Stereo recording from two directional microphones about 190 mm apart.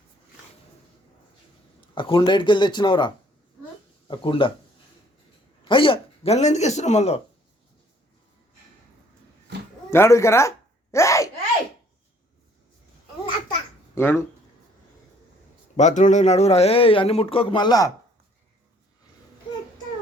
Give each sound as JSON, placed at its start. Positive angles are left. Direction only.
{"t": 1.8, "sound": "speech", "side_deg": 25}
{"t": 4.1, "sound": "speech", "side_deg": 25}
{"t": 5.6, "sound": "a man's voice", "side_deg": 25}
{"t": 9.9, "sound": "speech", "side_deg": 15}
{"t": 10.9, "sound": "a sound", "side_deg": 15}
{"t": 13.9, "sound": "speech", "side_deg": 15}
{"t": 15.7, "sound": "a man's voice", "side_deg": 40}